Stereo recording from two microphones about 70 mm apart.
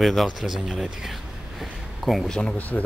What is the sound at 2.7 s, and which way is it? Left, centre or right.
Speech, left.